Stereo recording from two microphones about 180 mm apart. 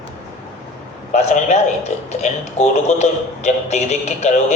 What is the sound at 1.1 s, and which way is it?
A man's voice, 40° left (ahead or behind).